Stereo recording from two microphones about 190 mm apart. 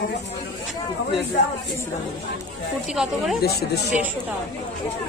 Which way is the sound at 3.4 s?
55° left (ahead or behind).